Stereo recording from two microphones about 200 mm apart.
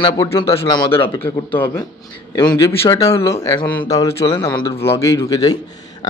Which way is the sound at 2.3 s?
20° left (ahead or behind).